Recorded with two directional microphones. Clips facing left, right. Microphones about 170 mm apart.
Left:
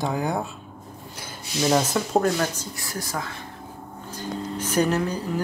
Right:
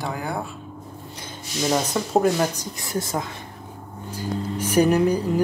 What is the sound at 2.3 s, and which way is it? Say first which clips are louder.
Speech: right 3 dB; 20° right (ahead or behind).